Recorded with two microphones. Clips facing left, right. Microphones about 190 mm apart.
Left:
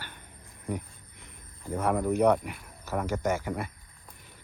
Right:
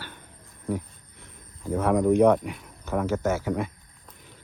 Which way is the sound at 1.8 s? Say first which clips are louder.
Right 5 dB; 5° left (ahead or behind).